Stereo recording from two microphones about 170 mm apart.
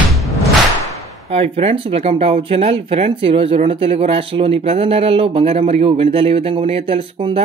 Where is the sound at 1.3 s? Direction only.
35° right (ahead or behind).